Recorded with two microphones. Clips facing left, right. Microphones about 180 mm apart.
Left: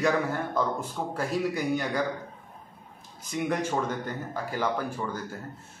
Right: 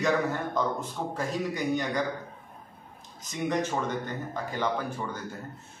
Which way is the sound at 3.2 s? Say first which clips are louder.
Even; 10° left (ahead or behind).